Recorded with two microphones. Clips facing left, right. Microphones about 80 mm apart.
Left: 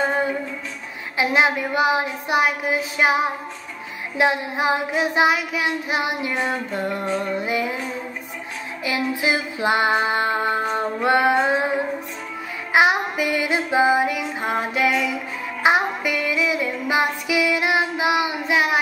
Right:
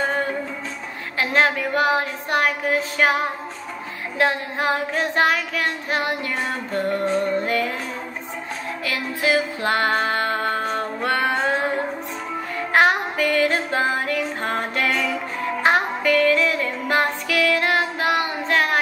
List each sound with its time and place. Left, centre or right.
0.0 s music: centre
1.1 s child singing: centre
8.8 s music: centre
12.7 s female singing: centre
15.6 s music: centre